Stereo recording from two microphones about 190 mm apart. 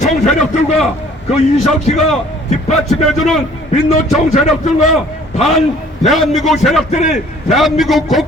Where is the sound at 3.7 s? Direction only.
35° left (ahead or behind).